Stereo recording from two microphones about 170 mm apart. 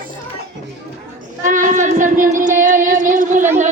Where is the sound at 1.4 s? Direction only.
50° right (ahead or behind).